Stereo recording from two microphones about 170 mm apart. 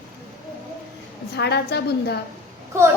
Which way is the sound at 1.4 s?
75° left (ahead or behind).